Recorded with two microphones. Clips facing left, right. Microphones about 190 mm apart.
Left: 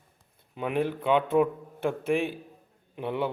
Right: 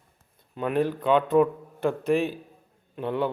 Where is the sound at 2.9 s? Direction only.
15° left (ahead or behind).